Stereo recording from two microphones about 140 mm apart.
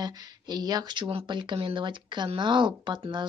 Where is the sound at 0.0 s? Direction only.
30° right (ahead or behind).